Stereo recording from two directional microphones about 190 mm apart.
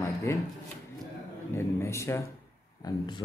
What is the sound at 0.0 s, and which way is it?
Shuffling cards, 15° left (ahead or behind).